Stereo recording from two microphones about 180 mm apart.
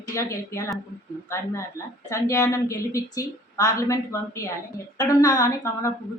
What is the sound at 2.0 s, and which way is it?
A woman's voice, 15° left (ahead or behind).